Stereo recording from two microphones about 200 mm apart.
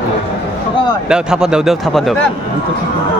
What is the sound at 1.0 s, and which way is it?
Speech, 5° right (ahead or behind).